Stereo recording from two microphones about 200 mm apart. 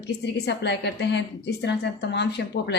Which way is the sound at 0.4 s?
60° left (ahead or behind).